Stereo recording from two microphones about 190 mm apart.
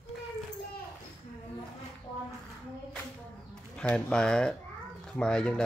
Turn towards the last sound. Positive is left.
turn(degrees=5)  # may be behind; listen again after turning